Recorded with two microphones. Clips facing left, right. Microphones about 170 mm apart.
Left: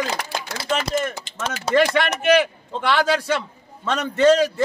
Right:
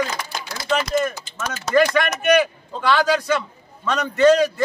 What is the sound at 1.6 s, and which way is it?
Speech, 30° left (ahead or behind).